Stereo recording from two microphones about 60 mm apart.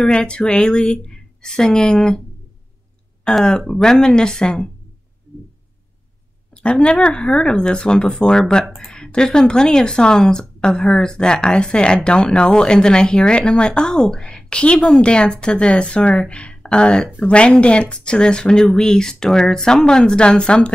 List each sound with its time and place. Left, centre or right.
0.0 s speech: centre
3.3 s speech: centre
6.5 s speech: centre